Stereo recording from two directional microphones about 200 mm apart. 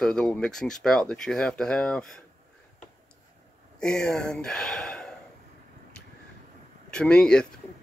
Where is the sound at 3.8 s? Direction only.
5° left (ahead or behind).